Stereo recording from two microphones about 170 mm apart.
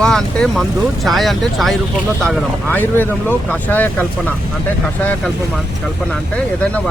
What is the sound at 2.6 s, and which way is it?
Speech, 10° left (ahead or behind).